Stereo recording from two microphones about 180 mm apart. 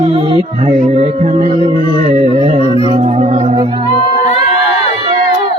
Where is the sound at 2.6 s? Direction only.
30° left (ahead or behind).